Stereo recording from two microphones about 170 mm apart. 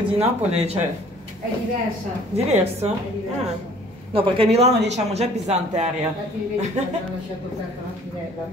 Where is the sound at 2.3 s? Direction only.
40° right (ahead or behind).